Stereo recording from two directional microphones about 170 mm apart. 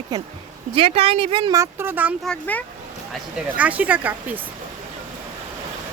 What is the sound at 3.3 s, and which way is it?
Speech, 10° right (ahead or behind).